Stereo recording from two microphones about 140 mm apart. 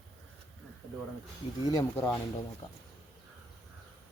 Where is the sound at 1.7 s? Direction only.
20° left (ahead or behind).